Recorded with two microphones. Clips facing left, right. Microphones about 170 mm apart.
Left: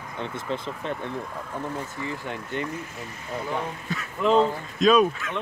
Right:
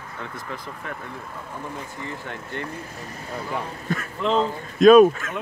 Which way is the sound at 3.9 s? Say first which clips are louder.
Left 1 dB; 50° right (ahead or behind).